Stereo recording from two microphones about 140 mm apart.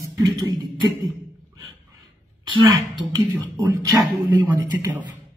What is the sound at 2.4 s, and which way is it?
Speech, 30° right (ahead or behind).